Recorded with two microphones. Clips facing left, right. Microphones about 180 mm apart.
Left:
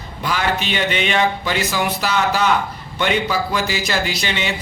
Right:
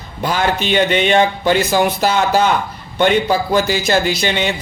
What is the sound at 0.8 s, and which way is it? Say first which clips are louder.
Speech: right 7 dB; 45° right (ahead or behind).